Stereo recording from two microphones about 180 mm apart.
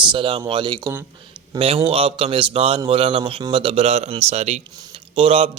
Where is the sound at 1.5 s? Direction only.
30° right (ahead or behind).